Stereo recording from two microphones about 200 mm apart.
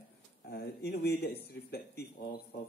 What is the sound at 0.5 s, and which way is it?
Speech, 55° left (ahead or behind).